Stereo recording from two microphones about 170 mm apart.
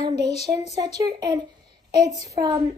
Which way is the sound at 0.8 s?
25° right (ahead or behind).